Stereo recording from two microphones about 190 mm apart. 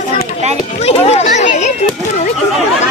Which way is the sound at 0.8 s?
35° left (ahead or behind).